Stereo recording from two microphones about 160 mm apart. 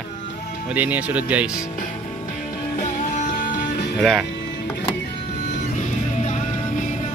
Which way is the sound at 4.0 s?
Centre (ahead or behind).